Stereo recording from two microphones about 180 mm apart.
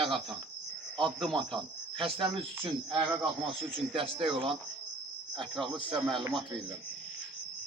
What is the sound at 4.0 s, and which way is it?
Speech, 30° right (ahead or behind).